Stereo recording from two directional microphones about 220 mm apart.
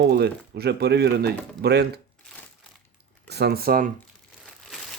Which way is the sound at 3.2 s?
50° right (ahead or behind).